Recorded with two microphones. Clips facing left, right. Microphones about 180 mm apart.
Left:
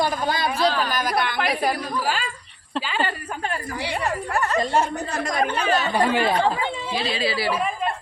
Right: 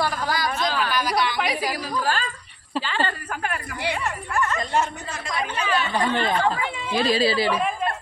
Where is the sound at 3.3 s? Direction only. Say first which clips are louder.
Left 1 dB; 30° left (ahead or behind).